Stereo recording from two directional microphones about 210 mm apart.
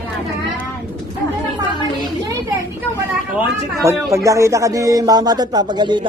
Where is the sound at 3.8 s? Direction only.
15° right (ahead or behind).